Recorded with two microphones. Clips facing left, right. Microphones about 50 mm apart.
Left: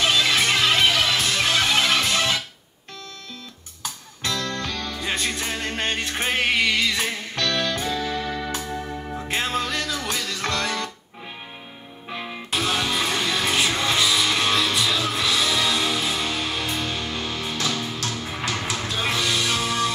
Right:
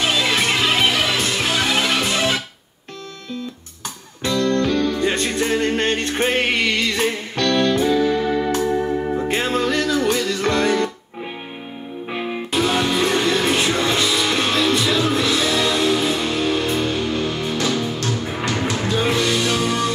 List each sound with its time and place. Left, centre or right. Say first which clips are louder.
0.0 s music: right 1 dB; centre
4.2 s music: right 9 dB; centre
8.7 s music: right 10 dB; right
9.1 s music: right 5 dB; centre
12.1 s music: right 6 dB; centre
12.4 s music: right 4 dB; centre